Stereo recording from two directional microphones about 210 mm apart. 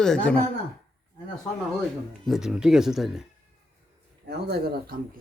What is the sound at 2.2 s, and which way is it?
A man's voice, centre (ahead or behind).